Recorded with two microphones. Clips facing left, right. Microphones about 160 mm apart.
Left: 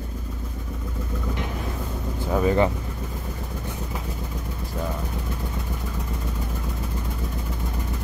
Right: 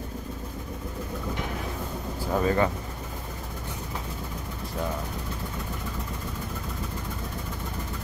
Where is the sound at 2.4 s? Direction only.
15° left (ahead or behind).